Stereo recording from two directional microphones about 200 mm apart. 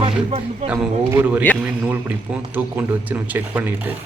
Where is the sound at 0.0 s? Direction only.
30° right (ahead or behind).